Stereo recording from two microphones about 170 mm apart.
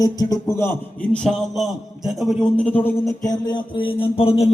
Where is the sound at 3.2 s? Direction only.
25° left (ahead or behind).